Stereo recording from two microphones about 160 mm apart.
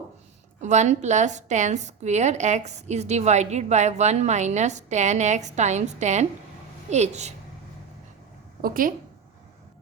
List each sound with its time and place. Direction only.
0.6 s a woman's voice: 45° right (ahead or behind)
8.6 s a woman's voice: 60° right (ahead or behind)